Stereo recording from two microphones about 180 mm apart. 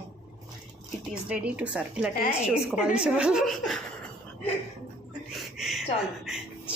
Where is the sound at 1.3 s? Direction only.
5° right (ahead or behind).